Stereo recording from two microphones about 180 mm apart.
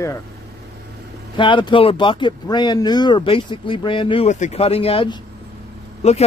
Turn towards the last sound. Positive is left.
turn(degrees=35)  # may be behind; listen again after turning